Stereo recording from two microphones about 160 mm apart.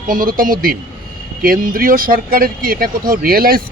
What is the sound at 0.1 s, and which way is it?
Speech, 60° right (ahead or behind).